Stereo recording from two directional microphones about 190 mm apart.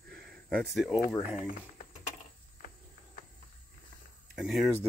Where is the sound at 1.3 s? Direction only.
45° left (ahead or behind).